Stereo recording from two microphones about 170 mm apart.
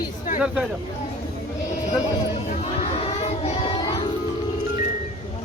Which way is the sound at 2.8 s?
40° left (ahead or behind).